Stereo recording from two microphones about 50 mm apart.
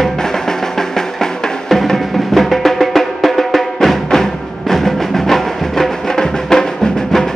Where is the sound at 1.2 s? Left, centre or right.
Centre.